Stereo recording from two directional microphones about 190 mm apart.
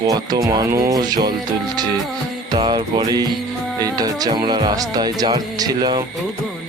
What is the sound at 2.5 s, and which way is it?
Speech, 25° right (ahead or behind).